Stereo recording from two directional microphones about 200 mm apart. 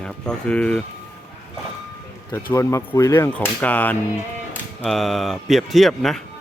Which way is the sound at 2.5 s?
15° left (ahead or behind).